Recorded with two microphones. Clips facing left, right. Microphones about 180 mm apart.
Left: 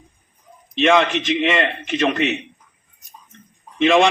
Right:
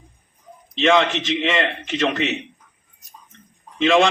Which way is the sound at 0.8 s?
15° left (ahead or behind).